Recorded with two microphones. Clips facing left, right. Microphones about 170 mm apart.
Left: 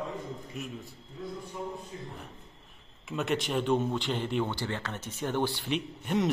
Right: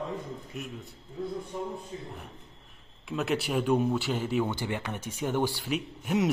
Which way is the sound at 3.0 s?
Centre (ahead or behind).